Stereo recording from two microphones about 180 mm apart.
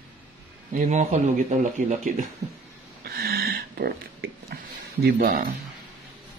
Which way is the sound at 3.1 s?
55° right (ahead or behind).